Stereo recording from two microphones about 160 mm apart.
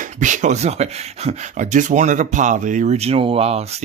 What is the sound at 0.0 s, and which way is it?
Speech, 50° right (ahead or behind).